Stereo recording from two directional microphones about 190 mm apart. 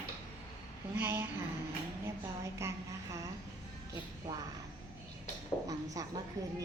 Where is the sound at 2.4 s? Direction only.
15° right (ahead or behind).